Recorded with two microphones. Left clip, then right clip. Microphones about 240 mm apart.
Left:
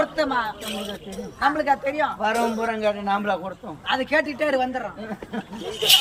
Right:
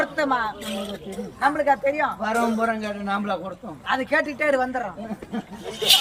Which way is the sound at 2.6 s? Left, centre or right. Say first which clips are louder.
Left 2 dB; centre.